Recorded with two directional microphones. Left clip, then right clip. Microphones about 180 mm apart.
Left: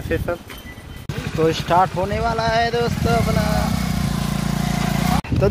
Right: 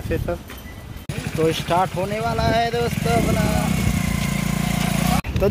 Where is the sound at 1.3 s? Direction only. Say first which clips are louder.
Left 3 dB; 5° left (ahead or behind).